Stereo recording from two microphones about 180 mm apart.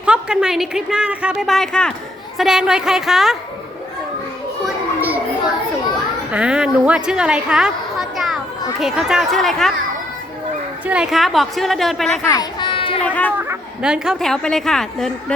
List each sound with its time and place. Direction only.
0.0 s a woman's voice: 5° right (ahead or behind)
4.6 s children playing: 10° right (ahead or behind)
6.3 s a woman's voice: 5° right (ahead or behind)
10.8 s a woman's voice: 5° right (ahead or behind)
12.3 s a sound: 25° left (ahead or behind)
13.1 s speech: 10° left (ahead or behind)
13.3 s a woman's voice: 10° right (ahead or behind)